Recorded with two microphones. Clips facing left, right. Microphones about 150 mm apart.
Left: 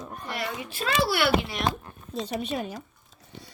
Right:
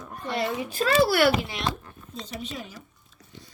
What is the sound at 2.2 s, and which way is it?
Speech, 60° left (ahead or behind).